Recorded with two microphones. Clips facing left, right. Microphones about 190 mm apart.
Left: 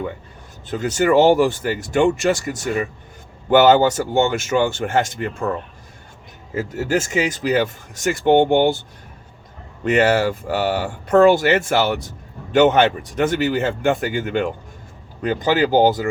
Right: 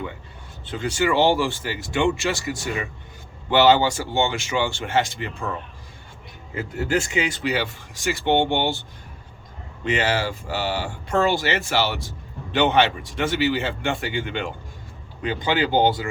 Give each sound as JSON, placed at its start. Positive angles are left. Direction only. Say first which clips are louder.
{"t": 0.6, "sound": "speech", "louder": "left 4 dB", "side_deg": 45}
{"t": 9.8, "sound": "speech", "louder": "left 7 dB", "side_deg": 45}